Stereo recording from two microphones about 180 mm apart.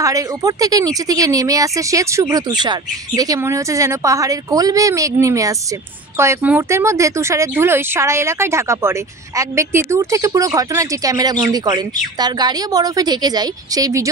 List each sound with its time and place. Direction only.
0.0 s speech: 20° right (ahead or behind)